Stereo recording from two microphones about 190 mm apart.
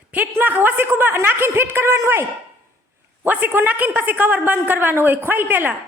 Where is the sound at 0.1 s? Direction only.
10° right (ahead or behind).